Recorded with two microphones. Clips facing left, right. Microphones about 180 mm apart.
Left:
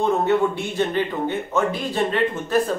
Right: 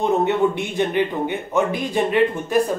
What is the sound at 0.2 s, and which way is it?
A man's voice, 15° right (ahead or behind).